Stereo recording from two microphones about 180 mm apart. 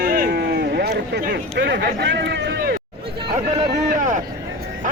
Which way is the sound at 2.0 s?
75° right (ahead or behind).